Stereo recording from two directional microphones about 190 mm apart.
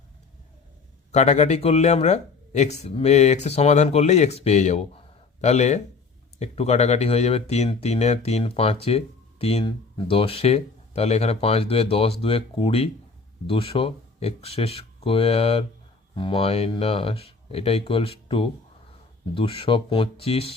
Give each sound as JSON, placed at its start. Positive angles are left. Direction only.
{"t": 1.1, "sound": "speech", "side_deg": 35}